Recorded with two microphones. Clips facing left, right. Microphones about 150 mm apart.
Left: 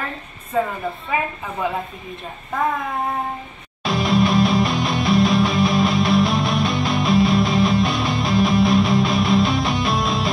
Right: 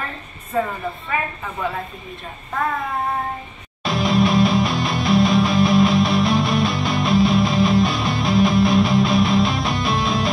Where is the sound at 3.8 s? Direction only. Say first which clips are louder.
Even; centre (ahead or behind).